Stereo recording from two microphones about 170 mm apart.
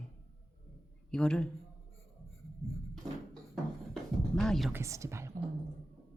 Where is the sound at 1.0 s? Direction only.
5° left (ahead or behind).